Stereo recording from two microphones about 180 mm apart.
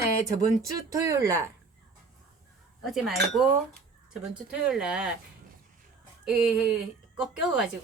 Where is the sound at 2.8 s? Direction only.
Centre (ahead or behind).